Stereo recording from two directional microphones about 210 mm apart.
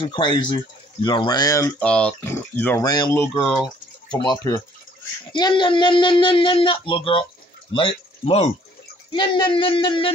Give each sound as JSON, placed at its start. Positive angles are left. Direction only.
{"t": 0.1, "sound": "speech", "side_deg": 20}